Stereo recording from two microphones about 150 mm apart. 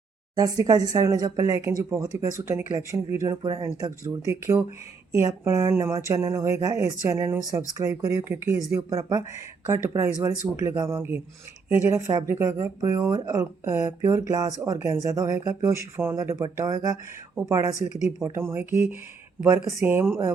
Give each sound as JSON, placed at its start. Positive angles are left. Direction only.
{"t": 0.3, "sound": "speech", "side_deg": -25}